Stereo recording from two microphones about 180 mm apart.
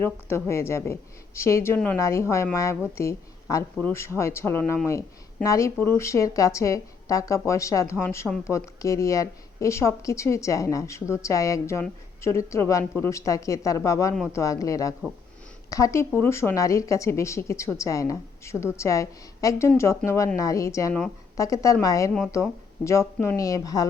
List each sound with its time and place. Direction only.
0.0 s a woman's voice: 15° left (ahead or behind)